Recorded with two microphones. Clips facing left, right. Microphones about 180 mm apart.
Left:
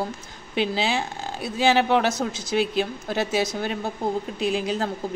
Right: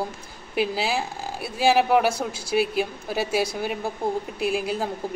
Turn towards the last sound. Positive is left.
turn(degrees=-10)  # may be behind; listen again after turning